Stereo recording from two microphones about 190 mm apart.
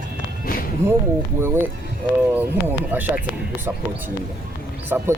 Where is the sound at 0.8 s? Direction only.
15° right (ahead or behind).